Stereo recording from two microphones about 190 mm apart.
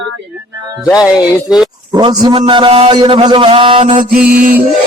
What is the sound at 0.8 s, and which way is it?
Speech, centre (ahead or behind).